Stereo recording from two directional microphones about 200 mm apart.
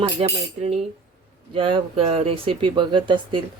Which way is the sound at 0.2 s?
30° right (ahead or behind).